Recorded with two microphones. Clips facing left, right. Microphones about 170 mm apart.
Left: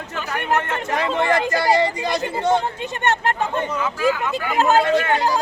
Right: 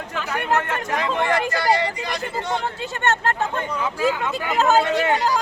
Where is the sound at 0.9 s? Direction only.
35° left (ahead or behind).